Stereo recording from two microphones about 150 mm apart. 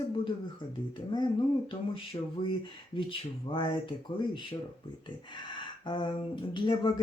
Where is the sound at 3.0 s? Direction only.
35° left (ahead or behind).